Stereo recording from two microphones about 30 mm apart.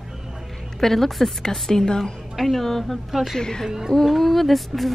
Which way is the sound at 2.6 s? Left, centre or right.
Centre.